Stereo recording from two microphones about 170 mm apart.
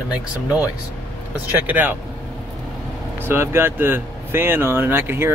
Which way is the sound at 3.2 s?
15° right (ahead or behind).